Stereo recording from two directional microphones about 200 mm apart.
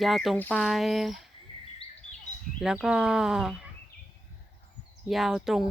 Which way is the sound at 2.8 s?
5° right (ahead or behind).